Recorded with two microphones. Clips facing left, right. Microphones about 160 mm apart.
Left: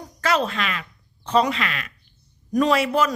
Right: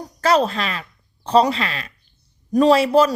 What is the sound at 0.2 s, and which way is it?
A woman's voice, 35° right (ahead or behind).